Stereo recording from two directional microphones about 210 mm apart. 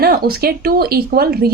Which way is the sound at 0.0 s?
45° right (ahead or behind).